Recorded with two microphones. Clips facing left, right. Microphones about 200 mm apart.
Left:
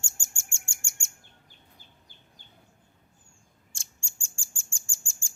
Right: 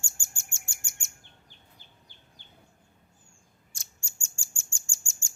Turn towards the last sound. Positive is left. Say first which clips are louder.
# even
turn(degrees=30)  # may be behind; listen again after turning